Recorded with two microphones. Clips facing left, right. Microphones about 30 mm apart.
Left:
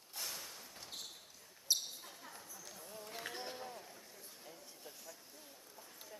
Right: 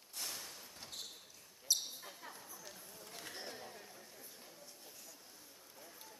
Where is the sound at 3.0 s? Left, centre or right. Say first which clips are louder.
Left 4 dB; centre.